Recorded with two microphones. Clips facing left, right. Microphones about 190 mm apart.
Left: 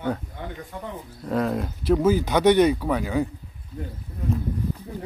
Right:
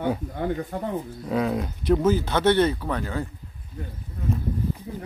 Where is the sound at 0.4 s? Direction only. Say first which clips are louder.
Right 8 dB; 45° right (ahead or behind).